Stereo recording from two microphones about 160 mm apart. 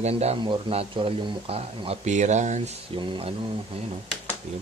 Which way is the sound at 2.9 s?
35° right (ahead or behind).